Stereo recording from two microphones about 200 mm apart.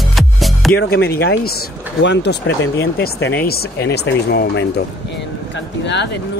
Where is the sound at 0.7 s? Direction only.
55° left (ahead or behind).